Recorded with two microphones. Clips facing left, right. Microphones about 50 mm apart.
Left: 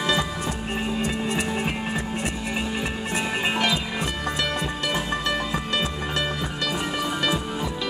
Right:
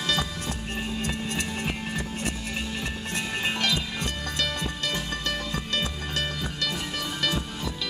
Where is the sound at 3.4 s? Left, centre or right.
Centre.